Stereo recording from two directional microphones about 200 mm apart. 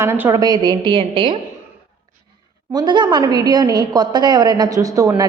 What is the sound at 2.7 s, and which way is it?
A woman's voice, 20° right (ahead or behind).